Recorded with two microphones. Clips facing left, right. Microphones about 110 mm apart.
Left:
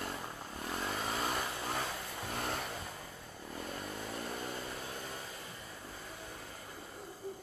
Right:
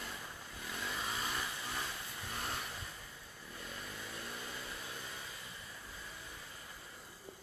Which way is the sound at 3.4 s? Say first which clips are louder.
Left 7 dB; 45° left (ahead or behind).